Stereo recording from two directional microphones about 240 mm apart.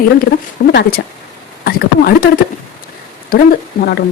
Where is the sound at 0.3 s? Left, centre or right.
Left.